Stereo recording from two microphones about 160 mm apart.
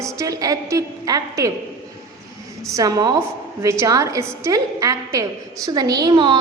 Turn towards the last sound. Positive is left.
turn(degrees=-30)  # may be behind; listen again after turning